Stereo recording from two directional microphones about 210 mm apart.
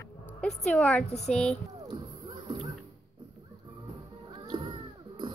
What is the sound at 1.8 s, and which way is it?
Music, 25° right (ahead or behind).